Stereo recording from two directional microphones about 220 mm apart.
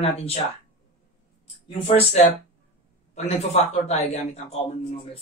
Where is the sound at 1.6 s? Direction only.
25° left (ahead or behind).